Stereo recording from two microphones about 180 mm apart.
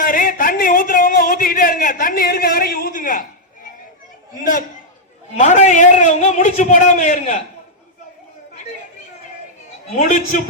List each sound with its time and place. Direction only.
0.0 s a sound: 50° left (ahead or behind)
5.3 s a man's voice: 40° left (ahead or behind)
10.0 s a man's voice: 45° left (ahead or behind)